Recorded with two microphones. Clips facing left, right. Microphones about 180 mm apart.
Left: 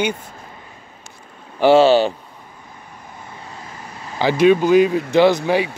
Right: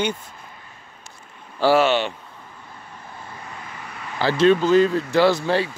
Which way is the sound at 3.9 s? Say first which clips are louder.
Even; 30° left (ahead or behind).